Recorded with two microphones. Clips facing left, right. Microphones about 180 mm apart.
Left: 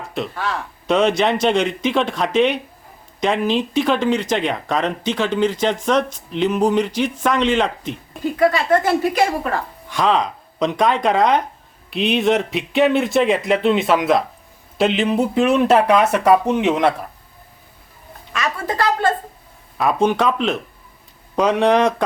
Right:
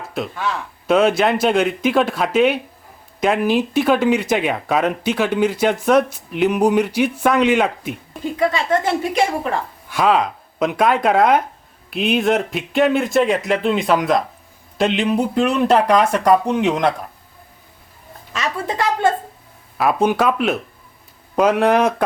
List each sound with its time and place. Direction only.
0.9 s speech: 5° right (ahead or behind)
8.4 s speech: 25° right (ahead or behind)
9.9 s speech: 5° right (ahead or behind)
19.8 s speech: 5° right (ahead or behind)